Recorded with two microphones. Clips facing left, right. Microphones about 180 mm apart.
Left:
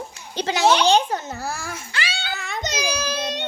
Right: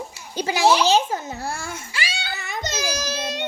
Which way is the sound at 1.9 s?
5° right (ahead or behind).